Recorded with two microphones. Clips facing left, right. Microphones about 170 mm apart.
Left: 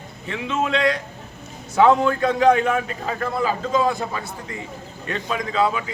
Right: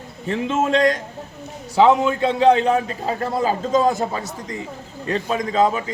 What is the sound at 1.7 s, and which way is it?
A man's voice, 20° right (ahead or behind).